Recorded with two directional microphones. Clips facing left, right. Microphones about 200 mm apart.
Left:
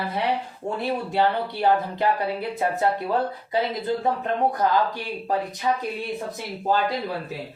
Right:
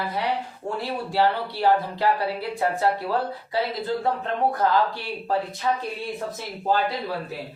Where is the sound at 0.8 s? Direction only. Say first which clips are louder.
Even; 20° left (ahead or behind).